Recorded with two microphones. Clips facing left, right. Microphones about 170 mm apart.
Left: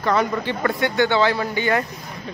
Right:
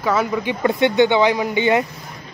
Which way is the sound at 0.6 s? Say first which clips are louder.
Right 5 dB; 20° right (ahead or behind).